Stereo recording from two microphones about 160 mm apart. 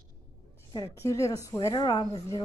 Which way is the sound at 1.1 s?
20° left (ahead or behind).